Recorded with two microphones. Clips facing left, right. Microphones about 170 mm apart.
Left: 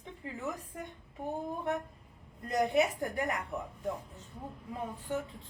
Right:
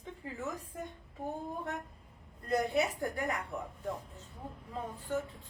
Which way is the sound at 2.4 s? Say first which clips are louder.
Left 2 dB; 20° left (ahead or behind).